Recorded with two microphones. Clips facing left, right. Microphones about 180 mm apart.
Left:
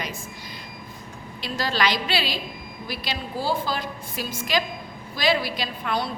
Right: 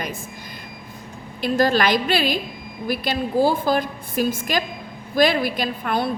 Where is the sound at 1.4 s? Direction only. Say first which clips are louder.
Right 7 dB; 50° right (ahead or behind).